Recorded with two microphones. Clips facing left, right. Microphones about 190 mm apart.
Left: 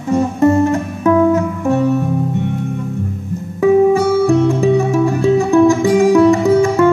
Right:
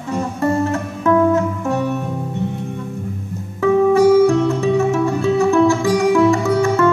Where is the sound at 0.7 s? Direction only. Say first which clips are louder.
Left 3 dB; 10° left (ahead or behind).